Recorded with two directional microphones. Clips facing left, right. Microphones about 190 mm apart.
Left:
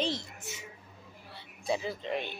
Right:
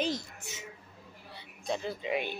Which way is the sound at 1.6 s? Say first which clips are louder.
Left 2 dB; 5° left (ahead or behind).